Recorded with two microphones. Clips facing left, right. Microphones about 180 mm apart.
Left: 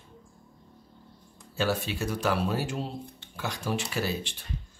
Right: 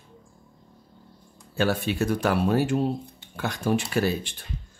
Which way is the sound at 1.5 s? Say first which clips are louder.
Right 4 dB; 60° right (ahead or behind).